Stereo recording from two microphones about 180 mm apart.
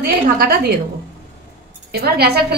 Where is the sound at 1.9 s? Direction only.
60° right (ahead or behind).